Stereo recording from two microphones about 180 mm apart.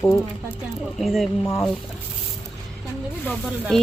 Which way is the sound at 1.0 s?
Centre (ahead or behind).